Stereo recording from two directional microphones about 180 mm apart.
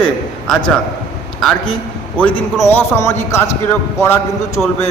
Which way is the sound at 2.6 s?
15° left (ahead or behind).